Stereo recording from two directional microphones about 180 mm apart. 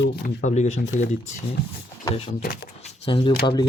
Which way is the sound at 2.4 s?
55° left (ahead or behind).